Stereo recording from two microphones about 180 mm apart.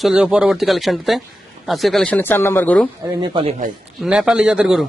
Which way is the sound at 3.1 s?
25° right (ahead or behind).